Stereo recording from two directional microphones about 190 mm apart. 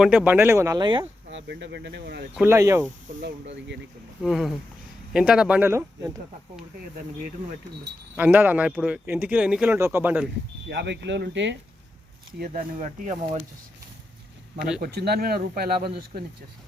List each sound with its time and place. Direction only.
0.0 s speech: 5° right (ahead or behind); by 1.0 s 25° right (ahead or behind)
1.3 s speech: 70° right (ahead or behind)
2.3 s speech: 10° right (ahead or behind)
4.2 s speech: centre (ahead or behind)
8.1 s speech: 10° right (ahead or behind)
10.7 s speech: 65° right (ahead or behind)
12.4 s speech: 45° right (ahead or behind)
14.8 s speech: 55° right (ahead or behind)